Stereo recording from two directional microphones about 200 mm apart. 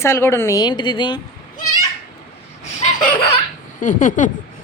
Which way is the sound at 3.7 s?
40° left (ahead or behind).